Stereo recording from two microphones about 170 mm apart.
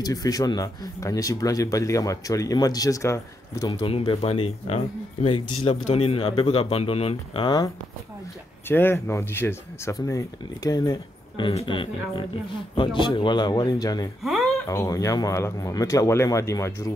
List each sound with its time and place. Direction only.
0.0 s speech: 20° left (ahead or behind)
3.8 s speech: 30° left (ahead or behind)
8.6 s speech: 15° left (ahead or behind)